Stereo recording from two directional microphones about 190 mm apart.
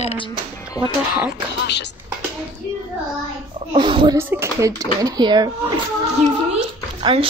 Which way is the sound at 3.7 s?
25° right (ahead or behind).